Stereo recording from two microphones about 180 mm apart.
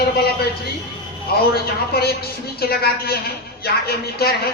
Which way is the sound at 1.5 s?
60° left (ahead or behind).